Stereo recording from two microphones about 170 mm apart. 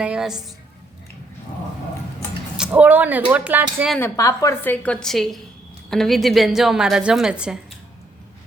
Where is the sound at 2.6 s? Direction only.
10° right (ahead or behind).